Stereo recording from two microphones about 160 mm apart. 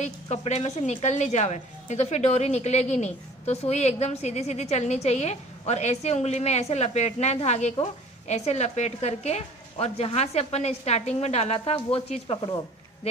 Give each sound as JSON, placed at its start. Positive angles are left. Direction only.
{"t": 0.0, "sound": "a woman's voice", "side_deg": 45}